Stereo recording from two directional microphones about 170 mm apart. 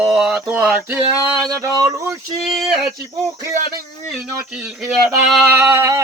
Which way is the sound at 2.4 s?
Centre (ahead or behind).